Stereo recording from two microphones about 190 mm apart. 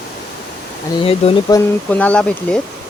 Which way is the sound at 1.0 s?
30° left (ahead or behind).